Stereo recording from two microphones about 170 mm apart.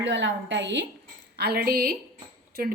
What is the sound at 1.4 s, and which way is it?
Speech, 65° right (ahead or behind).